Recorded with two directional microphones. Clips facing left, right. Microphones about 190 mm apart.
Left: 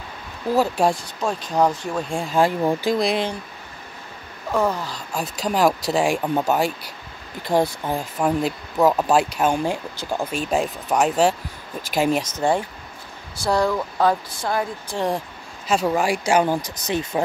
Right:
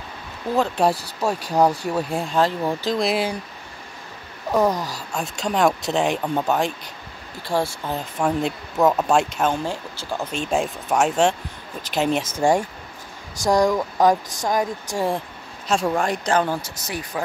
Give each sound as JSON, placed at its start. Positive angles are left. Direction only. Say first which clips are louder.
{"t": 0.6, "sound": "speech", "louder": "even", "side_deg": 0}
{"t": 2.3, "sound": "speech", "louder": "left 3 dB", "side_deg": 10}
{"t": 3.0, "sound": "speech", "louder": "even", "side_deg": -5}
{"t": 4.5, "sound": "speech", "louder": "right 2 dB", "side_deg": -15}
{"t": 5.1, "sound": "speech", "louder": "left 1 dB", "side_deg": 5}
{"t": 8.2, "sound": "speech", "louder": "even", "side_deg": 5}
{"t": 12.2, "sound": "speech", "louder": "right 2 dB", "side_deg": -10}
{"t": 15.0, "sound": "speech", "louder": "even", "side_deg": 0}